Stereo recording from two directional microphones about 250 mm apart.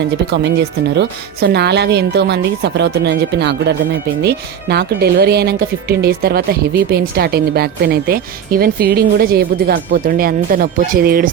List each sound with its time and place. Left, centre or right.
0.4 s speech: right